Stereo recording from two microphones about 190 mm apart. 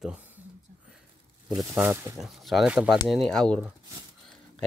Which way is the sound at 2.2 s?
Centre (ahead or behind).